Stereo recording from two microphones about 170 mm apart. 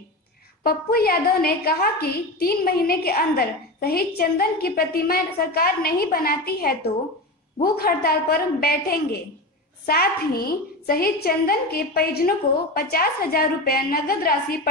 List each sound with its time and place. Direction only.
0.7 s a woman's voice: 65° left (ahead or behind)